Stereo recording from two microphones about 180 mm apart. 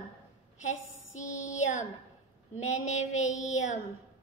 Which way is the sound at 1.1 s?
45° left (ahead or behind).